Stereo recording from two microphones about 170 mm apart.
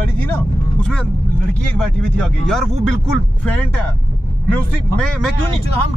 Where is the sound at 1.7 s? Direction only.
5° left (ahead or behind).